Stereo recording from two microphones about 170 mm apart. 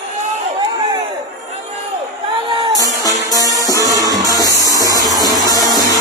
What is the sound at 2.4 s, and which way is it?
Music, 30° right (ahead or behind).